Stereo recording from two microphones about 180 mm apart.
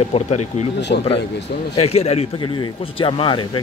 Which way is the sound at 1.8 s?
35° left (ahead or behind).